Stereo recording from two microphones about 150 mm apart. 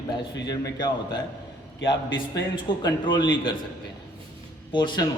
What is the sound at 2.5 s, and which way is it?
A man's voice, 30° left (ahead or behind).